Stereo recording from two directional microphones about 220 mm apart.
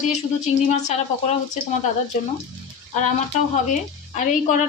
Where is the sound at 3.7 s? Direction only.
35° left (ahead or behind).